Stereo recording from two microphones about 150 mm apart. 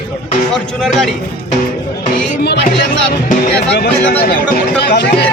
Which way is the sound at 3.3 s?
90° left.